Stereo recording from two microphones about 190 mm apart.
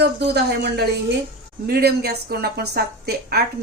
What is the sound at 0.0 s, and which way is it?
A woman's voice, 60° right (ahead or behind).